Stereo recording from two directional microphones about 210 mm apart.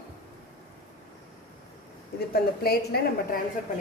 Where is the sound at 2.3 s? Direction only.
45° left (ahead or behind).